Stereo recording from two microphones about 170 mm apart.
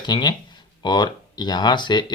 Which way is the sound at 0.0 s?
25° left (ahead or behind).